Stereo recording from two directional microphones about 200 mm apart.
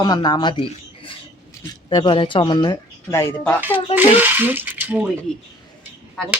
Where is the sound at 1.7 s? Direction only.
20° left (ahead or behind).